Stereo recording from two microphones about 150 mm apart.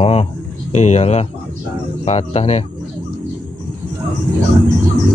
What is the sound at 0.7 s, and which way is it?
A man's voice, 50° left (ahead or behind).